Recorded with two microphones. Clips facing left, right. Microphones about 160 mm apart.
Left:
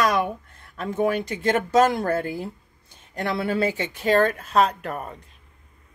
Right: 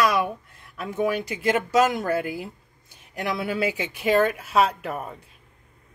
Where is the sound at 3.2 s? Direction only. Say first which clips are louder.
Left 2 dB; 30° left (ahead or behind).